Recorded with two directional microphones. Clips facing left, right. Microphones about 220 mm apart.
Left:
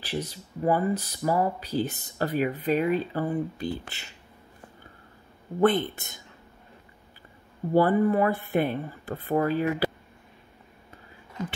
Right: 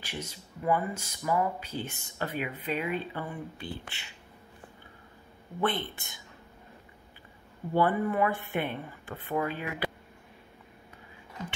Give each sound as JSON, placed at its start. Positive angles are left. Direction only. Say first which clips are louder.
{"t": 0.0, "sound": "speech", "louder": "left 8 dB", "side_deg": 35}
{"t": 5.6, "sound": "speech", "louder": "left 8 dB", "side_deg": 45}
{"t": 7.7, "sound": "speech", "louder": "left 6 dB", "side_deg": 40}